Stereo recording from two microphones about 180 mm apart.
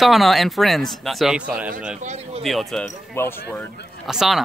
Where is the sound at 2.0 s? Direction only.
40° right (ahead or behind).